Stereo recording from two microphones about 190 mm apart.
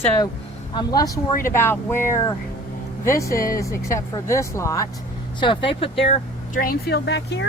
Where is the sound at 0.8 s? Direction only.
20° left (ahead or behind).